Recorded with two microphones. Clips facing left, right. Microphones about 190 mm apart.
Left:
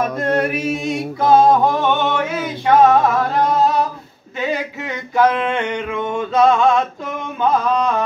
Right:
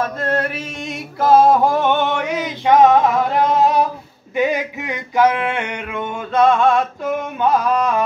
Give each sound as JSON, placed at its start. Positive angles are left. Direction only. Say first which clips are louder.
{"t": 0.0, "sound": "chant", "louder": "left 2 dB", "side_deg": 15}
{"t": 0.8, "sound": "a sound", "louder": "right 1 dB", "side_deg": 0}
{"t": 4.4, "sound": "male singing", "louder": "right 3 dB", "side_deg": -15}